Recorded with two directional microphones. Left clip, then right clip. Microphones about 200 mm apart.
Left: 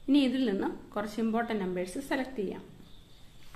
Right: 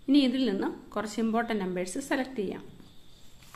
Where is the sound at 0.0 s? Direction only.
10° right (ahead or behind).